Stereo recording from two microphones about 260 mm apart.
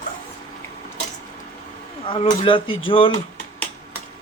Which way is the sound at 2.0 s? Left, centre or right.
Left.